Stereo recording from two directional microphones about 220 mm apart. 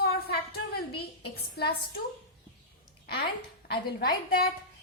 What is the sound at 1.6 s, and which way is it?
Speech, 45° left (ahead or behind).